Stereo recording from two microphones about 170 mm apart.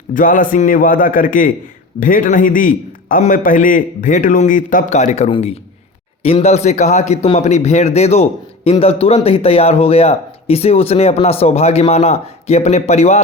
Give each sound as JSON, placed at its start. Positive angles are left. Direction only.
{"t": 0.1, "sound": "a man's voice", "side_deg": 50}